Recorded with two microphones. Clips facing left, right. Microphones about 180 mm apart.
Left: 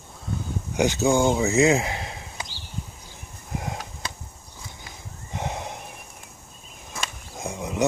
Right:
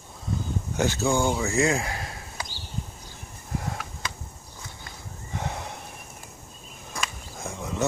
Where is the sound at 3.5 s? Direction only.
20° left (ahead or behind).